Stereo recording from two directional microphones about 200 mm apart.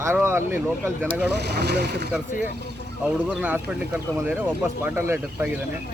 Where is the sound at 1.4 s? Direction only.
55° right (ahead or behind).